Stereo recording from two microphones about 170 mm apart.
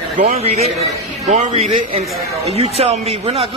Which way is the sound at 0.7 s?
45° right (ahead or behind).